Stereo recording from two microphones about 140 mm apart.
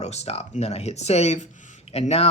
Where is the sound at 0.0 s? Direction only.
50° left (ahead or behind).